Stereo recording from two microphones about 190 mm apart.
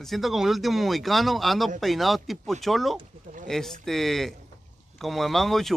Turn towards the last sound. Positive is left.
turn(degrees=0)  # may be behind; listen again after turning